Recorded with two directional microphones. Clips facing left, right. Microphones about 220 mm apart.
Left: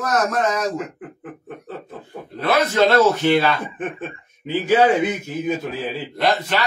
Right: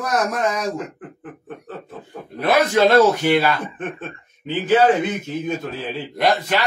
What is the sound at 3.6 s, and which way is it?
A man's voice, 10° left (ahead or behind).